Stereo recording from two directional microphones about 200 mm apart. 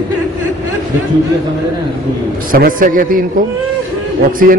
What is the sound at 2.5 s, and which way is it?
Speech, 45° right (ahead or behind).